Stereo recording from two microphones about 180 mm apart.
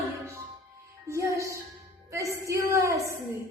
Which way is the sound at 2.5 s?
15° right (ahead or behind).